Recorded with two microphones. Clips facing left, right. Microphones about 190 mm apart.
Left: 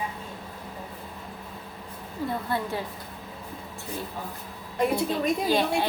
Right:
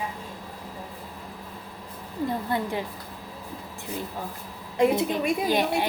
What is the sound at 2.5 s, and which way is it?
Speech, 15° right (ahead or behind).